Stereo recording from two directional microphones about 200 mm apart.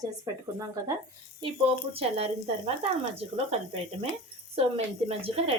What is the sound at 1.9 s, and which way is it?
A woman's voice, 30° right (ahead or behind).